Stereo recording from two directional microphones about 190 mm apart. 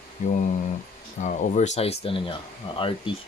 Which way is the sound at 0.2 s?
40° left (ahead or behind).